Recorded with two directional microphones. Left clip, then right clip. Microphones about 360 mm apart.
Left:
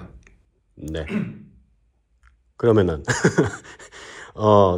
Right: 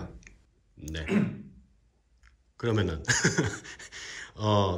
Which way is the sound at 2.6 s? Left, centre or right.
Centre.